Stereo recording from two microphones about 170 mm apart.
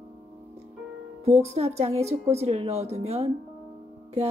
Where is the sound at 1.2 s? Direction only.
40° right (ahead or behind).